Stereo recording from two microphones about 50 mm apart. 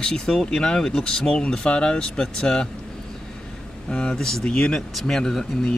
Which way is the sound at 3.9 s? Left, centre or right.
Centre.